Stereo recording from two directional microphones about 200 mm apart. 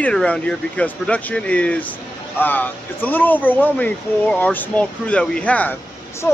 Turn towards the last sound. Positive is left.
turn(degrees=5)  # may be behind; listen again after turning